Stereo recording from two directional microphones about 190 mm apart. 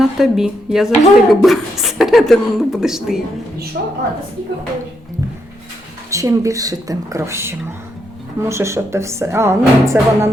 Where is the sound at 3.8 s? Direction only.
55° right (ahead or behind).